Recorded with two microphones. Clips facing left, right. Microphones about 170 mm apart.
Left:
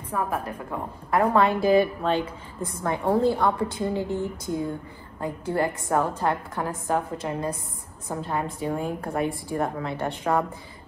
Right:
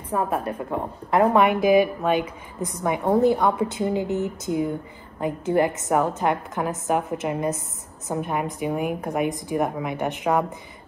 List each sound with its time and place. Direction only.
0.1 s a woman's voice: 30° right (ahead or behind)
1.4 s a woman's voice: 15° right (ahead or behind)